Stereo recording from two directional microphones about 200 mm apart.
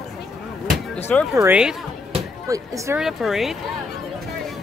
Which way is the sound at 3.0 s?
Centre (ahead or behind).